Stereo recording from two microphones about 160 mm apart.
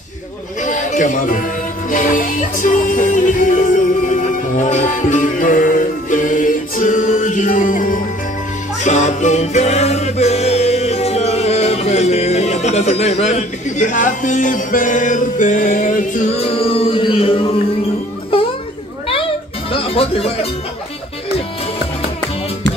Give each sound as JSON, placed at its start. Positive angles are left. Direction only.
{"t": 0.6, "sound": "music", "side_deg": 50}
{"t": 16.3, "sound": "music", "side_deg": 35}
{"t": 18.3, "sound": "children playing", "side_deg": 35}
{"t": 19.7, "sound": "speech", "side_deg": 35}